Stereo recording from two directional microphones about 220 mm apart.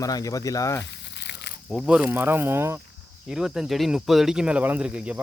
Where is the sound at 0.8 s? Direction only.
50° left (ahead or behind).